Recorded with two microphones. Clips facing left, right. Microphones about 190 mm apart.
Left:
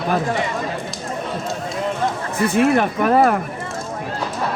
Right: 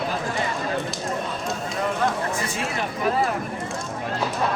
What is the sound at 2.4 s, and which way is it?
Speech, 60° left (ahead or behind).